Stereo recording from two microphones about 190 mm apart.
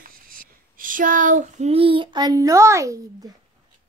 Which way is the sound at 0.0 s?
45° right (ahead or behind).